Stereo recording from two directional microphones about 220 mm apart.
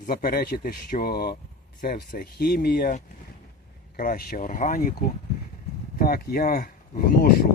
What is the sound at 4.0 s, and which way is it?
Speech, 40° left (ahead or behind).